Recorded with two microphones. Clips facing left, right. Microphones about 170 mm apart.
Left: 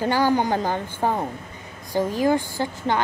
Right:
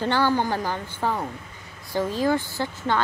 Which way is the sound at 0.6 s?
50° left (ahead or behind).